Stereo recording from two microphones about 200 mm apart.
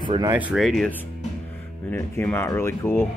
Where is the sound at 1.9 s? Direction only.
10° left (ahead or behind).